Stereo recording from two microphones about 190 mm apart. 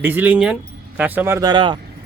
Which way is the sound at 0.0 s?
10° right (ahead or behind).